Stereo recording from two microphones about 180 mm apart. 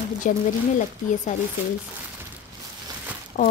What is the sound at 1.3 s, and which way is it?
Speech, 45° left (ahead or behind).